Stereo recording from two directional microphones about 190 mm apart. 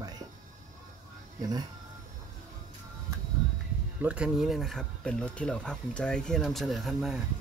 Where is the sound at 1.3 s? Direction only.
20° right (ahead or behind).